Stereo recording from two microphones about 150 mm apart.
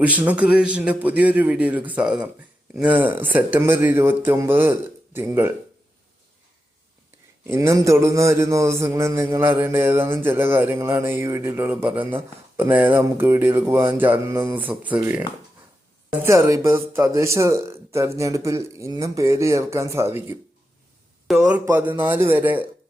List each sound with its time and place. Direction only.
0.0 s a man's voice: 10° right (ahead or behind)
7.4 s a man's voice: 15° right (ahead or behind)
16.2 s speech: 20° right (ahead or behind)
21.6 s a man's voice: 15° right (ahead or behind)